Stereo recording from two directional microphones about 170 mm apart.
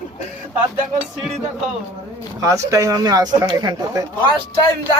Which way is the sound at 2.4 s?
20° right (ahead or behind).